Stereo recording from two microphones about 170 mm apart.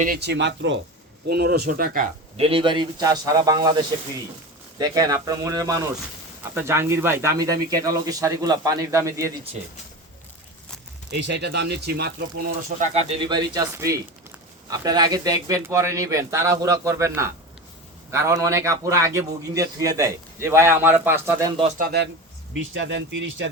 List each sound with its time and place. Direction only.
0.2 s speech: 90° right
1.3 s speech: 70° right (ahead or behind)
2.3 s a man's voice: 35° right (ahead or behind); by 9.3 s 15° right (ahead or behind)
11.2 s speech: 85° right
12.8 s a man's voice: 40° right (ahead or behind); by 21.5 s 15° right (ahead or behind)
21.8 s speech: 70° right (ahead or behind)
22.5 s speech: 90° right